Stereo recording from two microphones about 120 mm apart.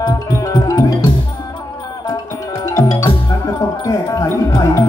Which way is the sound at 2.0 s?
35° left (ahead or behind).